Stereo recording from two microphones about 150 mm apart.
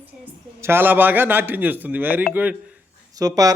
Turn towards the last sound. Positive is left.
turn(degrees=-25)  # may be behind; listen again after turning